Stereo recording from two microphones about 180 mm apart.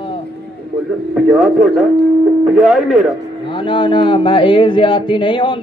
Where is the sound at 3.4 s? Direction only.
30° left (ahead or behind).